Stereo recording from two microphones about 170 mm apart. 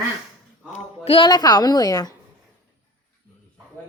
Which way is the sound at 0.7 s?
35° left (ahead or behind).